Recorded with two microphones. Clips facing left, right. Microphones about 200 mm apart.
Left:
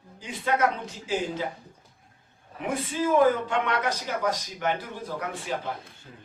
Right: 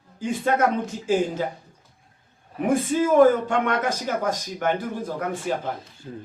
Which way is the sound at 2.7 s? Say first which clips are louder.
Right 5 dB; 45° right (ahead or behind).